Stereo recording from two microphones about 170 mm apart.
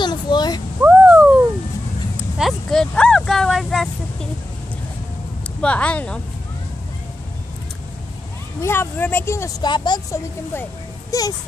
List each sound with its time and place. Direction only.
0.0 s a sound: 25° left (ahead or behind)
0.8 s a sound: 5° right (ahead or behind)
2.1 s vehicle: 5° right (ahead or behind)
5.6 s speech: 5° left (ahead or behind)
8.5 s speech: 15° left (ahead or behind)
9.7 s a woman's voice: 25° left (ahead or behind)